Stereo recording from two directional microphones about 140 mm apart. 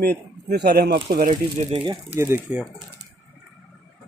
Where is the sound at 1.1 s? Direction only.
90° right.